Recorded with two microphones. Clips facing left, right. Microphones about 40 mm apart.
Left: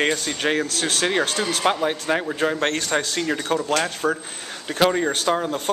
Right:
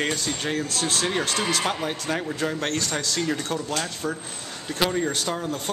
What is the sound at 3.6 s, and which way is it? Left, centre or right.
Speech, left.